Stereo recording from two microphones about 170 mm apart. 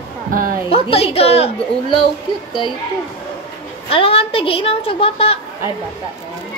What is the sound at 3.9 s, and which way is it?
A woman's voice, 35° left (ahead or behind).